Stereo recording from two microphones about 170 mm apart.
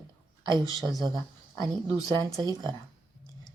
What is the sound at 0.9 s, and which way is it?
A woman's voice, 25° right (ahead or behind).